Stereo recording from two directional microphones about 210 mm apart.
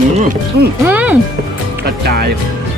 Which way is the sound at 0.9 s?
5° right (ahead or behind).